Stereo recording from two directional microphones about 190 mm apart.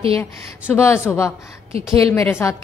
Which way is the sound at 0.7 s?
10° left (ahead or behind).